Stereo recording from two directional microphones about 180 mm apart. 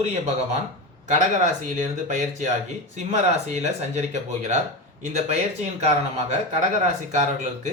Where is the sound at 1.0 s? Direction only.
40° right (ahead or behind).